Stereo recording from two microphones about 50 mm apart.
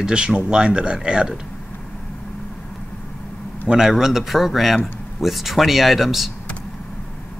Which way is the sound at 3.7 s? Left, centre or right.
Centre.